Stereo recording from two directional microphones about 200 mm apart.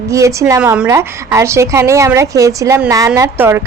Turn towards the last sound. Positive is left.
turn(degrees=-10)  # may be behind; listen again after turning